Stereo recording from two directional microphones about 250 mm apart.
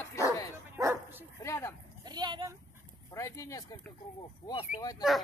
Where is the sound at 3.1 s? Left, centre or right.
Centre.